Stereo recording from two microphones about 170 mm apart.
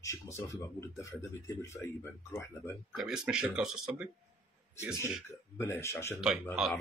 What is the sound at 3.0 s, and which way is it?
Speech, centre (ahead or behind).